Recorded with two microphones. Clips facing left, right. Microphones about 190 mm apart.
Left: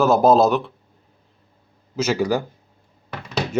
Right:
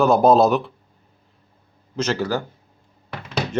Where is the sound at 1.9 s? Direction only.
10° left (ahead or behind).